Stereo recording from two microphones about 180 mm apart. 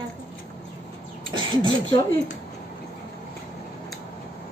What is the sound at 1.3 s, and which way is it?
Speech, 25° right (ahead or behind).